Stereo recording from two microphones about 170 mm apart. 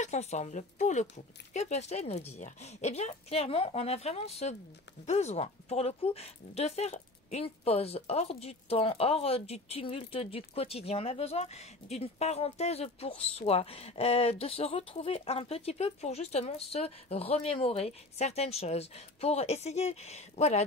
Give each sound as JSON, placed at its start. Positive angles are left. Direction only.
{"t": 0.0, "sound": "speech", "side_deg": 40}